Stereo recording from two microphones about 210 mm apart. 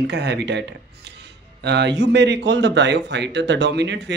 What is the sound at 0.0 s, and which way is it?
Speech, 55° right (ahead or behind).